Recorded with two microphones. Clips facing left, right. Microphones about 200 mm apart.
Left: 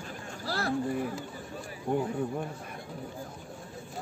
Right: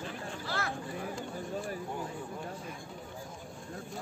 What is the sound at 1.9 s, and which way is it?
Speech, 55° left (ahead or behind).